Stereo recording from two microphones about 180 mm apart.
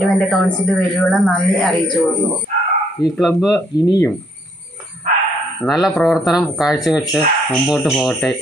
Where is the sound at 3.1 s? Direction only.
Centre (ahead or behind).